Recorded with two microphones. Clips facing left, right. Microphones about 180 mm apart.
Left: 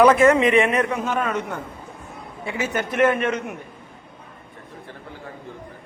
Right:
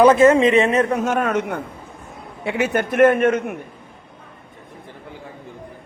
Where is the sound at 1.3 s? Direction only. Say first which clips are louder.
Right 5 dB; 75° right (ahead or behind); by 3.6 s 55° right (ahead or behind).